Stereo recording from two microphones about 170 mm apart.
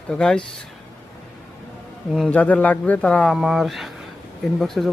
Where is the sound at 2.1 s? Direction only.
5° left (ahead or behind).